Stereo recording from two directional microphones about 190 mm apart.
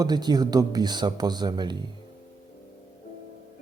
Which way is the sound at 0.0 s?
20° right (ahead or behind).